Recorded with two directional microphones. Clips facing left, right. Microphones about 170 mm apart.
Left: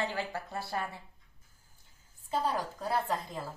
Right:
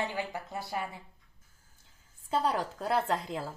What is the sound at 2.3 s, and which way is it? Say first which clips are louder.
A woman's voice: right 2 dB; 85° right.